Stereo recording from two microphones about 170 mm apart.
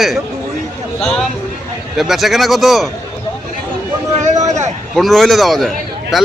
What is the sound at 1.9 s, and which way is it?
Speech, centre (ahead or behind).